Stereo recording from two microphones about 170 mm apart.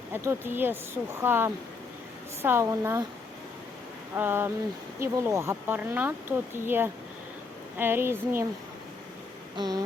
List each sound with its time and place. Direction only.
0.1 s speech: 15° right (ahead or behind)
4.1 s speech: 15° right (ahead or behind)
9.6 s a sound: 25° right (ahead or behind)